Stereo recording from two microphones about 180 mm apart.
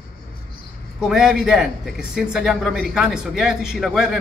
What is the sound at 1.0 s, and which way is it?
A man's voice, 5° right (ahead or behind).